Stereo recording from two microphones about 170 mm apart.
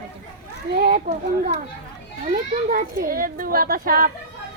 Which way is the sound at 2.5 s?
55° right (ahead or behind).